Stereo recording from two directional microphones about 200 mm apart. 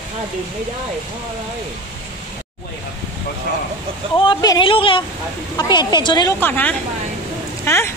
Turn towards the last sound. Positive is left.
turn(degrees=10)  # may be behind; listen again after turning